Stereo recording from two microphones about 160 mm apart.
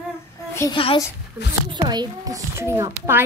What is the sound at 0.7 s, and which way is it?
Speech, 35° left (ahead or behind).